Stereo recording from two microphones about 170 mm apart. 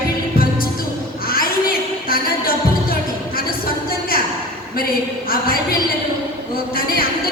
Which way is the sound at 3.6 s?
60° left (ahead or behind).